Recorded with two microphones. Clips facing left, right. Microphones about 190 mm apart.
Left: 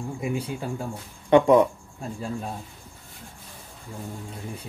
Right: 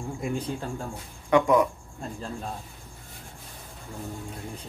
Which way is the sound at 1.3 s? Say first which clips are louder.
Left 4 dB; 30° left (ahead or behind).